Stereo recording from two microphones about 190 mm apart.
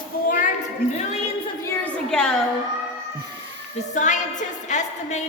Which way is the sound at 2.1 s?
5° left (ahead or behind).